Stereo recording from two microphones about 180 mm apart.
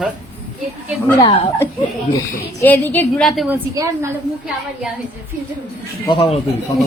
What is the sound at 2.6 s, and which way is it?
Speech, 10° left (ahead or behind).